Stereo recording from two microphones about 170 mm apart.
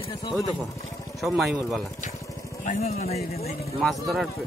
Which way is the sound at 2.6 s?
40° left (ahead or behind).